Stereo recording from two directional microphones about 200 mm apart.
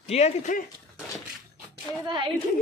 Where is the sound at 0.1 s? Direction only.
35° left (ahead or behind).